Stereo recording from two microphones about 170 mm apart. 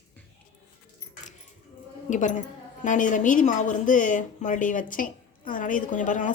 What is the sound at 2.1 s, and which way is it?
A woman's voice, 50° left (ahead or behind).